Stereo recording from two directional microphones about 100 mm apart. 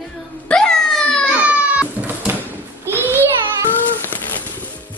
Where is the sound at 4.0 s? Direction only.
20° left (ahead or behind).